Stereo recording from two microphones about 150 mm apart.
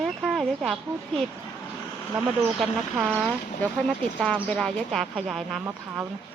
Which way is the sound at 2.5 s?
5° right (ahead or behind).